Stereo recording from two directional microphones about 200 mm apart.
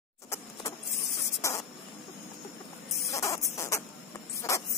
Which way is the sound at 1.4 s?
15° left (ahead or behind).